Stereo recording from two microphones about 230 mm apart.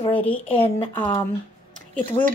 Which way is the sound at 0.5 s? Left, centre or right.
Left.